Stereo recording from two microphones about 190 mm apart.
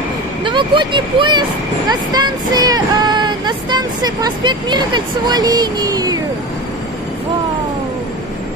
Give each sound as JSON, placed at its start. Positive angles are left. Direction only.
{"t": 0.4, "sound": "vehicle", "side_deg": -25}